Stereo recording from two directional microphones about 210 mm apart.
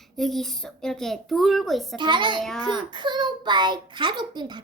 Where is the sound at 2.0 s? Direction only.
20° right (ahead or behind).